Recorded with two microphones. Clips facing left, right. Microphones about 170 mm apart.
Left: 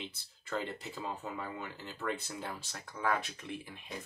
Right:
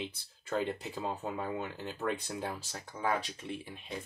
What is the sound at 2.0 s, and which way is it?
Speech, 30° right (ahead or behind).